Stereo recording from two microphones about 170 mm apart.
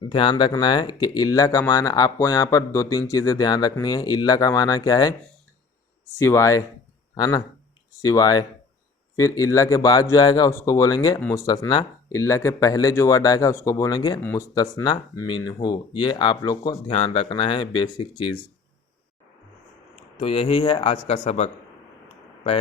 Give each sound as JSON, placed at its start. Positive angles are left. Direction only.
{"t": 0.1, "sound": "speech", "side_deg": 30}
{"t": 6.1, "sound": "speech", "side_deg": 15}
{"t": 16.9, "sound": "speech", "side_deg": 40}
{"t": 20.1, "sound": "speech", "side_deg": 35}